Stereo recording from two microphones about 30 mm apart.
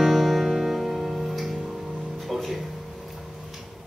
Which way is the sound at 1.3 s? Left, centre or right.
Centre.